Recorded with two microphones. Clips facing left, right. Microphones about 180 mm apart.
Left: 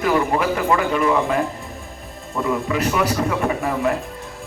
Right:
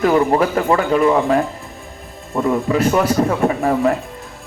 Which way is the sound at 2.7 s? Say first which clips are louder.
Right 6 dB; 35° right (ahead or behind).